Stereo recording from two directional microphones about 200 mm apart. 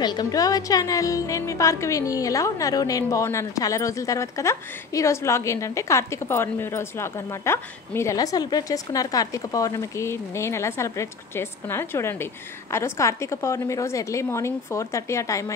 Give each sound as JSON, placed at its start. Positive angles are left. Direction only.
{"t": 0.0, "sound": "speech", "side_deg": 20}